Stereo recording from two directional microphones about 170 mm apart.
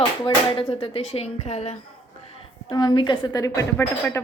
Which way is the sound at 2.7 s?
25° left (ahead or behind).